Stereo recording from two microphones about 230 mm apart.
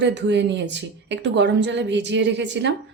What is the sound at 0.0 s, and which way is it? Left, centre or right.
A woman's voice, right.